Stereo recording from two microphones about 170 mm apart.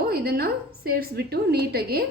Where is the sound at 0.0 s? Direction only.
65° right (ahead or behind).